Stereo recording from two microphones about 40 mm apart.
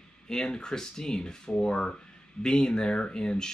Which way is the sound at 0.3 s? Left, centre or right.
Centre.